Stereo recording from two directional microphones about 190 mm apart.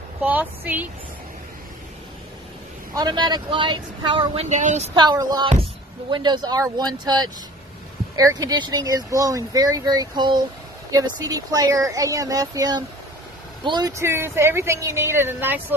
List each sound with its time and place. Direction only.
0.2 s a woman's voice: 10° right (ahead or behind)
2.9 s speech: 20° right (ahead or behind); by 4.9 s 40° right (ahead or behind)
4.9 s a woman's voice: 20° right (ahead or behind)